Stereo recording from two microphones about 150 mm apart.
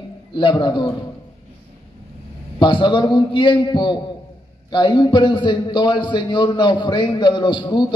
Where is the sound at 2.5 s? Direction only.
30° left (ahead or behind).